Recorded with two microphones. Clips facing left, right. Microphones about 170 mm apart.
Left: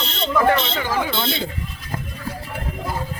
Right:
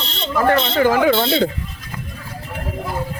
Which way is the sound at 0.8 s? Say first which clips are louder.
Right 9 dB; 60° right (ahead or behind).